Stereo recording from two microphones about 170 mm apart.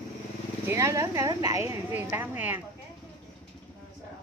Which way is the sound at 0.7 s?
20° right (ahead or behind).